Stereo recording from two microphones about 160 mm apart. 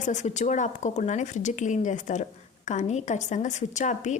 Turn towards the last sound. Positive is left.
turn(degrees=50)  # may be behind; listen again after turning